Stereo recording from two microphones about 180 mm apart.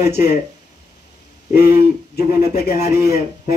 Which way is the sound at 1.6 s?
60° left (ahead or behind).